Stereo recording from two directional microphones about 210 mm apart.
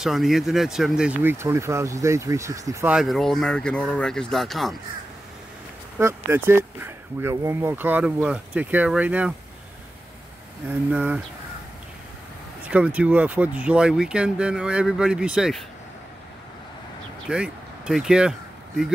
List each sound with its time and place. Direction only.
0.0 s speech: centre (ahead or behind)
5.9 s speech: 10° right (ahead or behind)
10.7 s speech: 5° right (ahead or behind)
12.6 s speech: 5° right (ahead or behind)
17.3 s speech: 5° right (ahead or behind)